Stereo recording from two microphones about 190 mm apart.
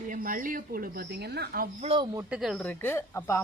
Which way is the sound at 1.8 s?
30° right (ahead or behind).